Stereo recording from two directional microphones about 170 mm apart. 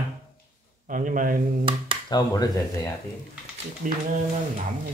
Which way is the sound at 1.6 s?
30° right (ahead or behind).